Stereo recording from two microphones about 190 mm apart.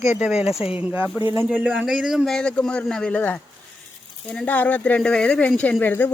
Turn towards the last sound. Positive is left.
turn(degrees=10)  # may be behind; listen again after turning